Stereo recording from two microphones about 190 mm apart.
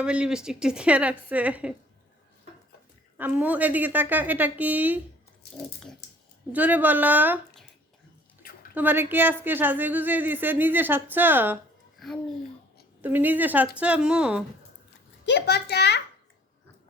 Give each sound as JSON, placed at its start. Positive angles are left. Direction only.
{"t": 0.0, "sound": "speech", "side_deg": -5}
{"t": 3.2, "sound": "speech", "side_deg": -10}
{"t": 6.5, "sound": "speech", "side_deg": -10}
{"t": 8.7, "sound": "speech", "side_deg": -10}
{"t": 11.9, "sound": "a child's voice", "side_deg": 0}
{"t": 15.3, "sound": "a child's voice", "side_deg": 60}